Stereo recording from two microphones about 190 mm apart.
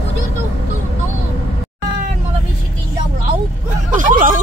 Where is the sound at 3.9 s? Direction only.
45° right (ahead or behind).